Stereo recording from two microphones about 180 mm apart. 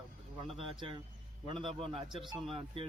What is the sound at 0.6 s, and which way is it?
Speech, 30° right (ahead or behind).